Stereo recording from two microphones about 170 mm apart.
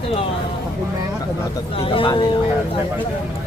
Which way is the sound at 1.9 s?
30° left (ahead or behind).